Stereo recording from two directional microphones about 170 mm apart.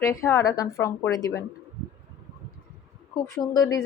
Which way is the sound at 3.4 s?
20° left (ahead or behind).